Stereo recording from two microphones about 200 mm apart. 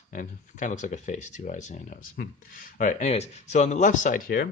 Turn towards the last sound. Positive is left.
turn(degrees=45)  # may be behind; listen again after turning